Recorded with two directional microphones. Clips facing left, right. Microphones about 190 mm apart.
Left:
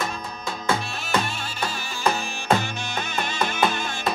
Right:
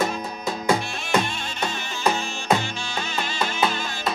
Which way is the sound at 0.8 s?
5° left (ahead or behind).